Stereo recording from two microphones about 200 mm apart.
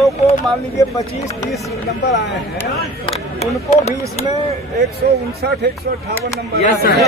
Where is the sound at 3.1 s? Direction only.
30° left (ahead or behind).